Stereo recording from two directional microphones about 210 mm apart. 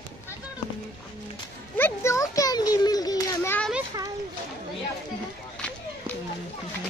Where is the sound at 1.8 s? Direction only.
10° left (ahead or behind).